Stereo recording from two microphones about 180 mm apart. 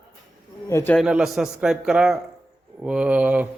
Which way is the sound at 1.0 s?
Centre (ahead or behind).